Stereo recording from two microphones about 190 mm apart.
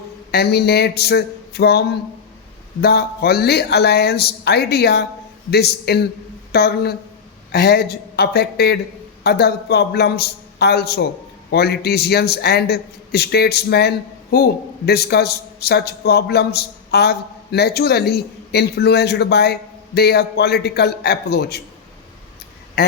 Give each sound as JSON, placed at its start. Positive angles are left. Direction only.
{"t": 0.3, "sound": "a man's voice", "side_deg": 60}
{"t": 22.8, "sound": "quack", "side_deg": 55}